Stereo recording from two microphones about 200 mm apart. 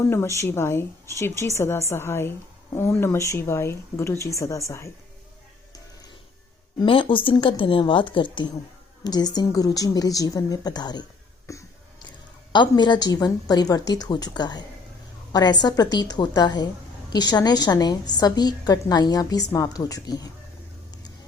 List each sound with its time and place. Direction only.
0.0 s speech: 10° left (ahead or behind)
6.7 s a woman's voice: 25° left (ahead or behind)
11.5 s a sound: 15° left (ahead or behind)
12.5 s a woman's voice: 20° left (ahead or behind)